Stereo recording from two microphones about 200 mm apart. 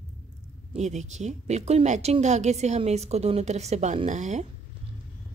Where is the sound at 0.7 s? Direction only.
35° right (ahead or behind).